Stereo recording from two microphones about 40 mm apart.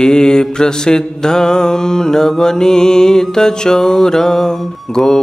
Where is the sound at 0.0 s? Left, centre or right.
Centre.